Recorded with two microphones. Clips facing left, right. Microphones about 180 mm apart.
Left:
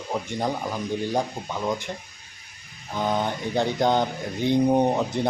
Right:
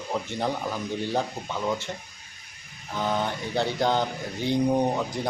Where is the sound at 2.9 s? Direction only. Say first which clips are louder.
Left 2 dB; 15° left (ahead or behind).